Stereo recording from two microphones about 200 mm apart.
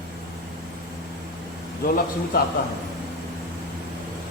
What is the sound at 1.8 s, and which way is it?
Speech, 45° left (ahead or behind).